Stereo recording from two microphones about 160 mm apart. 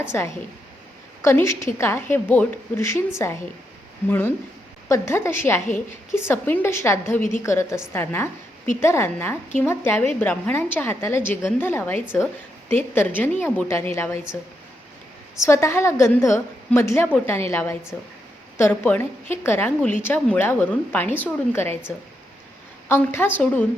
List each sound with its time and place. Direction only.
0.0 s a woman's voice: 15° left (ahead or behind)
4.9 s a woman's voice: 15° left (ahead or behind)
15.4 s a woman's voice: 15° left (ahead or behind)
22.9 s a woman's voice: 15° left (ahead or behind)